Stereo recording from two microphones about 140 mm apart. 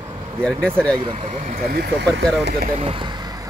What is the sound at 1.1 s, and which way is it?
Speech, 45° right (ahead or behind).